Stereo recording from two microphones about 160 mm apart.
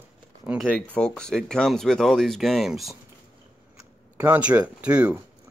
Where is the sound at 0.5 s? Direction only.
10° right (ahead or behind).